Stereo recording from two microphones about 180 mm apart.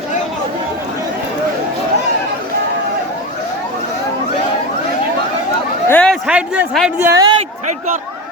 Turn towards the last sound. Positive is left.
turn(degrees=-45)  # may be behind; listen again after turning